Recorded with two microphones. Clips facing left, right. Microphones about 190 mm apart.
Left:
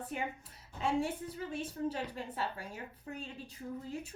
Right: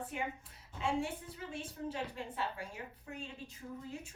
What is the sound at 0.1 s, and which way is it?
A woman's voice, 40° left (ahead or behind).